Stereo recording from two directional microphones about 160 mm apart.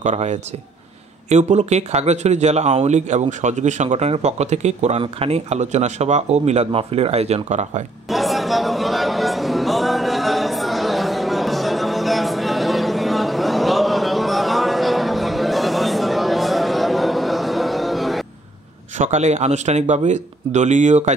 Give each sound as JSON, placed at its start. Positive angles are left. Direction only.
{"t": 0.0, "sound": "speech", "side_deg": -45}
{"t": 8.1, "sound": "a sound", "side_deg": 0}
{"t": 18.9, "sound": "speech", "side_deg": -45}